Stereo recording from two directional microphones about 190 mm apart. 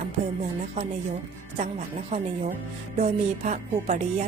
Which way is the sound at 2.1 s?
30° right (ahead or behind).